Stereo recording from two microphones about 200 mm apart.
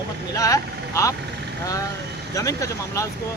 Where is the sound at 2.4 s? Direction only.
15° left (ahead or behind).